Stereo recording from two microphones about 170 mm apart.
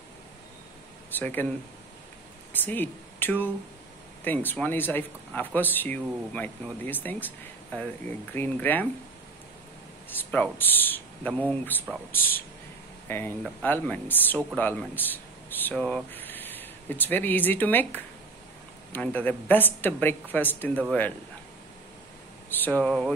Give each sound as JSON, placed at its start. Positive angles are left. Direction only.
{"t": 1.2, "sound": "speech", "side_deg": 10}
{"t": 2.5, "sound": "speech", "side_deg": 10}
{"t": 10.0, "sound": "speech", "side_deg": 10}
{"t": 22.5, "sound": "speech", "side_deg": 10}